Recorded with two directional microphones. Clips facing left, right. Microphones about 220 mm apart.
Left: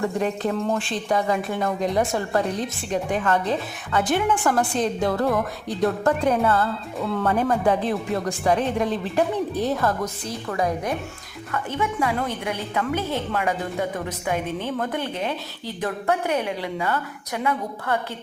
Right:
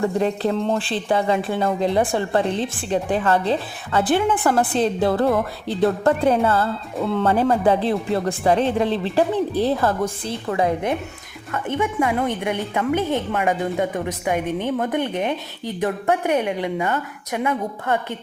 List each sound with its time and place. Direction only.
0.2 s a woman's voice: 30° right (ahead or behind)